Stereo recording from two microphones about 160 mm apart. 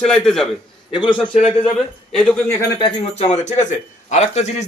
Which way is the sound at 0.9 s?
30° left (ahead or behind).